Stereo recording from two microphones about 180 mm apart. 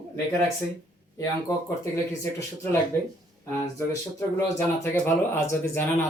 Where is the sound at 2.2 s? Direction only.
15° left (ahead or behind).